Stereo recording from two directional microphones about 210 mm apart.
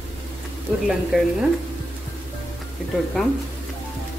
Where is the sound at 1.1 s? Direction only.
Centre (ahead or behind).